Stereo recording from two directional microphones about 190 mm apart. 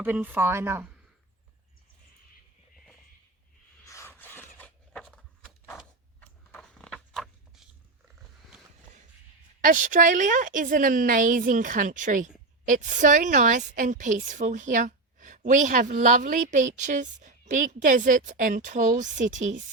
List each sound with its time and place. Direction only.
0.0 s a woman's voice: 10° right (ahead or behind)
3.8 s a sound: 15° left (ahead or behind)
9.6 s a woman's voice: 45° right (ahead or behind)